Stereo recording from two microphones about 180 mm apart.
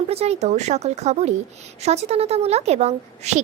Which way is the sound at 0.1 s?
35° right (ahead or behind).